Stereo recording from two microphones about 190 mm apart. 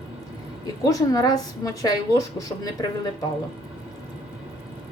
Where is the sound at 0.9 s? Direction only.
20° left (ahead or behind).